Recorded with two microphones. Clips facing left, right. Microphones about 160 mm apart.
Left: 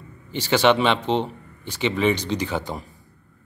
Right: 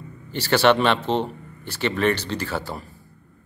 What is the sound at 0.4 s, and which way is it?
Speech, 10° left (ahead or behind).